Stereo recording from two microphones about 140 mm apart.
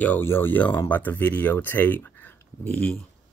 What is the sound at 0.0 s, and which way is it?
Speech, 15° left (ahead or behind).